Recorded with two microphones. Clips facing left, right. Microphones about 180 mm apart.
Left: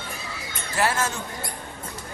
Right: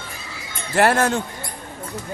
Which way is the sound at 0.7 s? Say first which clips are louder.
Right 8 dB; 60° right (ahead or behind).